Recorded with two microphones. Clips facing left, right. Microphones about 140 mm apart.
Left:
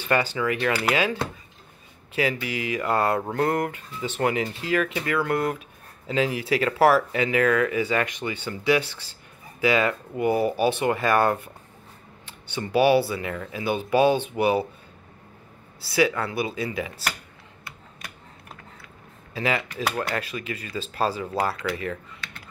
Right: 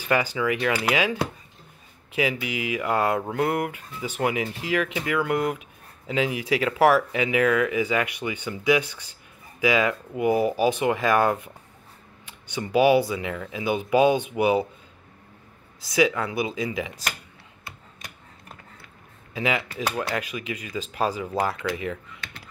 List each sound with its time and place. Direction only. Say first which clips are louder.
0.0 s speech: even; 10° right (ahead or behind)
15.8 s speech: right 1 dB; 15° right (ahead or behind)
19.3 s speech: even; 15° right (ahead or behind)